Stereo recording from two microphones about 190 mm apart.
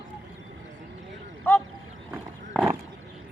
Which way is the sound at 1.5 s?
10° left (ahead or behind).